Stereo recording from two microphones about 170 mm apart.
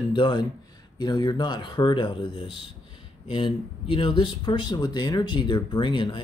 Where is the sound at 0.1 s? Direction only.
25° left (ahead or behind).